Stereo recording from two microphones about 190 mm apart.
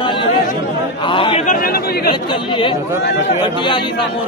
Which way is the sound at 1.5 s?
50° left (ahead or behind).